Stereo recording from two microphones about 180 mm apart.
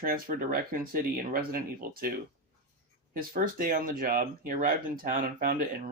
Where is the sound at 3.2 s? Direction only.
50° right (ahead or behind).